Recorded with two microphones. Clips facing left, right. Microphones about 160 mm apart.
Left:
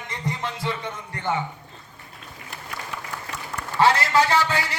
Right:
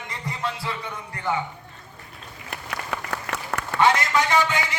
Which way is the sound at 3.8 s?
35° left (ahead or behind).